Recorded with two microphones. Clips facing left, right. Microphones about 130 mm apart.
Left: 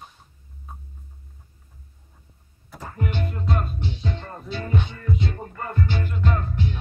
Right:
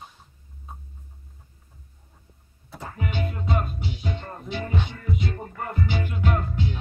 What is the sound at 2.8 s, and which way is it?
Music, 5° right (ahead or behind).